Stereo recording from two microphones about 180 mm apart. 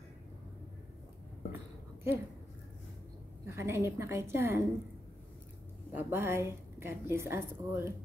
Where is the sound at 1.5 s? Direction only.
15° right (ahead or behind).